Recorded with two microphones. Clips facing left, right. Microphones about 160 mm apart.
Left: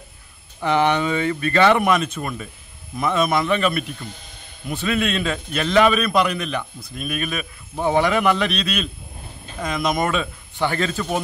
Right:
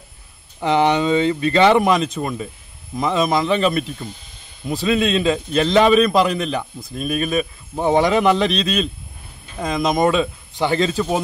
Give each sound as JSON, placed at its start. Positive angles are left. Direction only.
{"t": 0.6, "sound": "a man's voice", "side_deg": -25}
{"t": 9.6, "sound": "a man's voice", "side_deg": -20}